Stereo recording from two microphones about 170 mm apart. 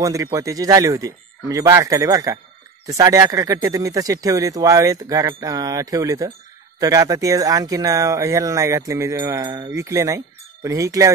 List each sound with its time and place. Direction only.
0.0 s speech: 20° right (ahead or behind)